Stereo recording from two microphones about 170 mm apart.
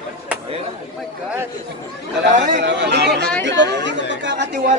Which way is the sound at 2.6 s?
90° right.